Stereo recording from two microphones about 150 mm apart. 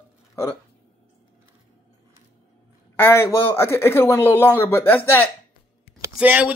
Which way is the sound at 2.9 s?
15° left (ahead or behind).